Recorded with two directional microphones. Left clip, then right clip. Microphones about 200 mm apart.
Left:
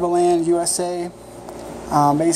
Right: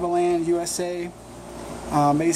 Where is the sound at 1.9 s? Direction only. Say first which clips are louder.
Left 4 dB; centre (ahead or behind).